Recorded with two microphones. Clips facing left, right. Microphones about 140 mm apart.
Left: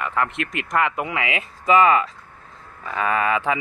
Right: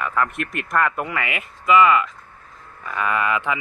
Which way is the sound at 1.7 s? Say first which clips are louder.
Even; 35° left (ahead or behind).